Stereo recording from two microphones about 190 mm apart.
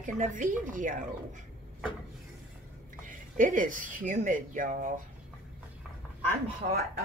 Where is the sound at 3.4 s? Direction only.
45° right (ahead or behind).